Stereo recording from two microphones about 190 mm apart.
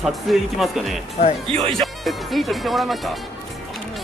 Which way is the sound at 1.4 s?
30° right (ahead or behind).